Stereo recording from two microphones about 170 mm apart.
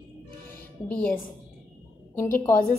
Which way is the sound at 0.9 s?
10° left (ahead or behind).